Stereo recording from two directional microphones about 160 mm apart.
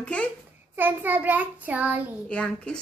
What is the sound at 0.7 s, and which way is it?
A child's voice, 10° right (ahead or behind).